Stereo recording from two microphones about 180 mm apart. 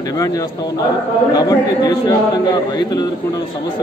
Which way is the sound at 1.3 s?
20° left (ahead or behind).